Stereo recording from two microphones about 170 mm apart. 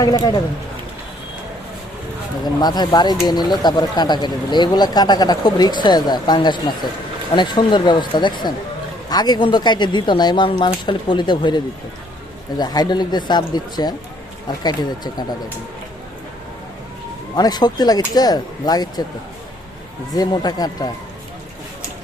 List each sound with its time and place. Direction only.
0.0 s speech: 25° left (ahead or behind)
2.4 s speech: 25° left (ahead or behind)
17.3 s speech: 25° left (ahead or behind)
20.1 s speech: 25° left (ahead or behind)